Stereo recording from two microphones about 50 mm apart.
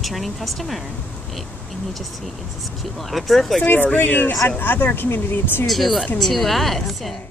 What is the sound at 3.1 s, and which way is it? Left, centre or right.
Speech, centre.